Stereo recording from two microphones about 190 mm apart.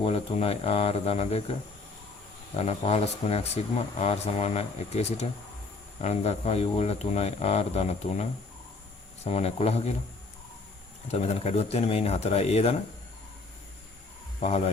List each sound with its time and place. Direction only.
0.0 s speech: 30° left (ahead or behind)
2.6 s speech: 35° left (ahead or behind)
11.1 s speech: 35° left (ahead or behind)
14.3 s speech: 35° left (ahead or behind)